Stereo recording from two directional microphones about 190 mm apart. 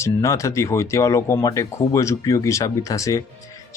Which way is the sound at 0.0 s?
15° left (ahead or behind).